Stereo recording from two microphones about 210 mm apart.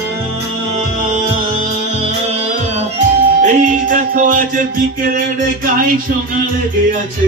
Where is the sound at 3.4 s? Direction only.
35° right (ahead or behind).